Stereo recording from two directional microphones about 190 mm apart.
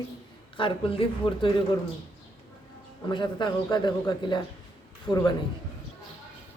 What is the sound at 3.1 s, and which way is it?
A woman's voice, 25° left (ahead or behind).